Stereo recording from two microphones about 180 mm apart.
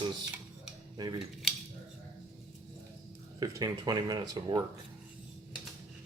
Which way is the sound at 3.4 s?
20° right (ahead or behind).